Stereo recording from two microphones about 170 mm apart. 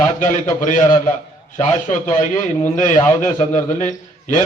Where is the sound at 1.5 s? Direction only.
20° left (ahead or behind).